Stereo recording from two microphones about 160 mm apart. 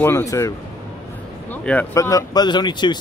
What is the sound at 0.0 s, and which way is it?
Speech, 20° left (ahead or behind).